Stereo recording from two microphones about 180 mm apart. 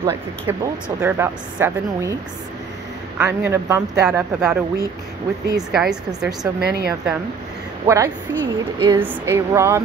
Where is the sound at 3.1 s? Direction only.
10° right (ahead or behind).